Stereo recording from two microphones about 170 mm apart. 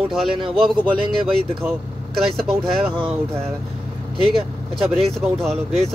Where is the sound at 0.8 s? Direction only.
30° right (ahead or behind).